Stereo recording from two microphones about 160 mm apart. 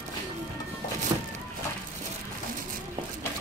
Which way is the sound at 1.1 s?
20° right (ahead or behind).